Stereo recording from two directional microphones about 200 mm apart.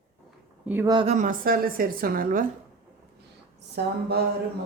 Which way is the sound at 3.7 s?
55° right (ahead or behind).